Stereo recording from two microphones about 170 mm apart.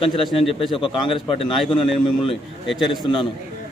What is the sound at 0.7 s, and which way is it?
Speech, 30° left (ahead or behind).